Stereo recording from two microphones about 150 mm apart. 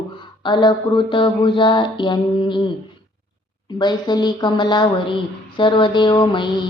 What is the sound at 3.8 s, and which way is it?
A woman's voice, 30° left (ahead or behind).